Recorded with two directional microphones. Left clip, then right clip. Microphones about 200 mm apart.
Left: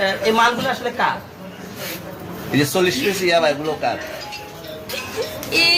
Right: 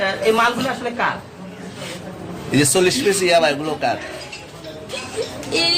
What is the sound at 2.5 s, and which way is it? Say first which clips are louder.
A man's voice: right 2 dB; 25° right (ahead or behind).